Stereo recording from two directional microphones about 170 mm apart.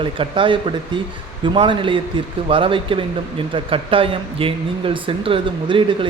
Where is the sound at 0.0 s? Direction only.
30° right (ahead or behind).